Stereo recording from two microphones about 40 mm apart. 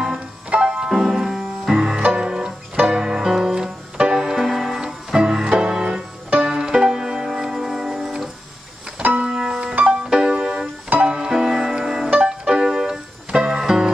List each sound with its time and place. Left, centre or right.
0.5 s music: right
0.7 s music: centre
4.8 s organ: centre
6.3 s music: centre
11.1 s music: centre